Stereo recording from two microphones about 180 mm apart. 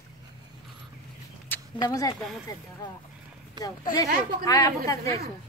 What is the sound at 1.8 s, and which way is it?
Speech, 20° left (ahead or behind).